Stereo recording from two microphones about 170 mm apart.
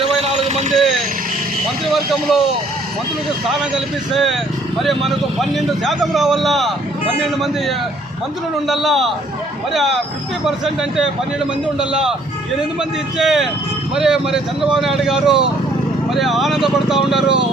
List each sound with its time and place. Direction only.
0.0 s a sound: 35° right (ahead or behind)
0.7 s speech: centre (ahead or behind)
2.3 s speech: centre (ahead or behind)
4.1 s speech: centre (ahead or behind)
13.1 s speech: centre (ahead or behind)